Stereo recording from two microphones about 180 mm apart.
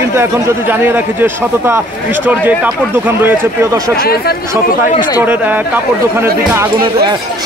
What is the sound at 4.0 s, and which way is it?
Speech, 60° left (ahead or behind).